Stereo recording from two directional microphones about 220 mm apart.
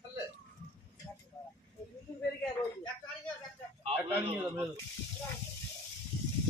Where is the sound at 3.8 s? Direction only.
25° right (ahead or behind).